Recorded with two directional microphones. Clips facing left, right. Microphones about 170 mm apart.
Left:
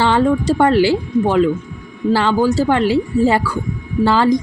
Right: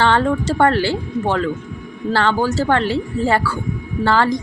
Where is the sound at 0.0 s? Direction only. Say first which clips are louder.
Left 2 dB; 15° left (ahead or behind).